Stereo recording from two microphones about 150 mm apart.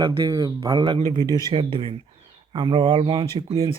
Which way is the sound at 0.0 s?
25° right (ahead or behind).